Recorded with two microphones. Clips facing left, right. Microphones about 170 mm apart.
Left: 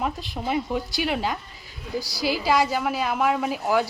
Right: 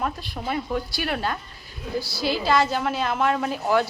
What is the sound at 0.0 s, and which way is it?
A woman's voice, 15° left (ahead or behind).